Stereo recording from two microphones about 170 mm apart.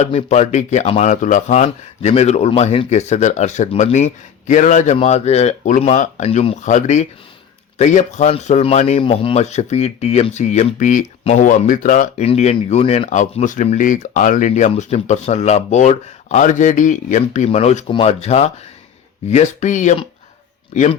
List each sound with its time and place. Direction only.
0.0 s speech: 40° left (ahead or behind)